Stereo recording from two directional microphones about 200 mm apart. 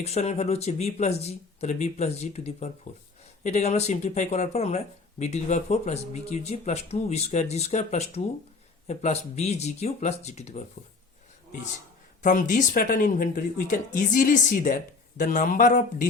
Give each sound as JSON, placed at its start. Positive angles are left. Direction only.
{"t": 0.0, "sound": "speech", "side_deg": 35}
{"t": 12.2, "sound": "speech", "side_deg": 40}